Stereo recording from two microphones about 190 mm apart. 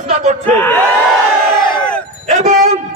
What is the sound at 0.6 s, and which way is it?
Speech, 10° left (ahead or behind).